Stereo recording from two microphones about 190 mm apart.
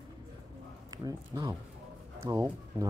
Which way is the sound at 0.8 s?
20° right (ahead or behind).